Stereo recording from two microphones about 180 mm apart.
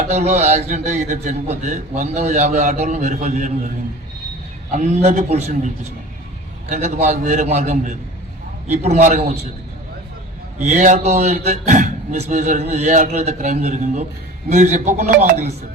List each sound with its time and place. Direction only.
0.0 s a man's voice: 40° right (ahead or behind)
4.7 s a man's voice: 40° right (ahead or behind)
10.6 s a man's voice: 45° right (ahead or behind)